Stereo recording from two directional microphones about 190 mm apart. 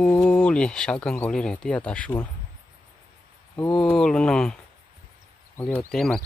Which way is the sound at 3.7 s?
5° left (ahead or behind).